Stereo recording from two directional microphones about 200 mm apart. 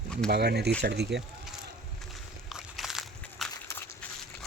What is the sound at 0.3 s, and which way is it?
Speech, 55° right (ahead or behind).